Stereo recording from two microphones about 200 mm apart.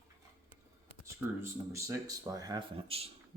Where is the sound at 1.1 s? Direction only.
15° right (ahead or behind).